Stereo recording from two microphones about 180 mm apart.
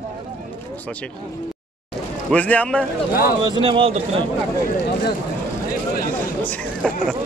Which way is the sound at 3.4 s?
25° right (ahead or behind).